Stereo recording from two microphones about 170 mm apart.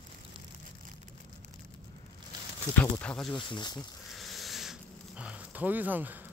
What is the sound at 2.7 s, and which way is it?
Speech, 10° left (ahead or behind).